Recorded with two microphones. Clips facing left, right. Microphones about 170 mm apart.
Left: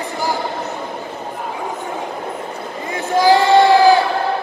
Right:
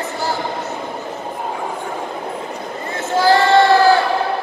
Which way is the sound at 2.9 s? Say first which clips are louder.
Left 1 dB; 15° left (ahead or behind).